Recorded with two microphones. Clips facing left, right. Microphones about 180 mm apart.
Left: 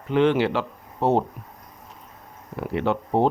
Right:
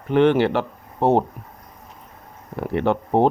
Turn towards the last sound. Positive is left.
turn(degrees=-60)  # may be behind; listen again after turning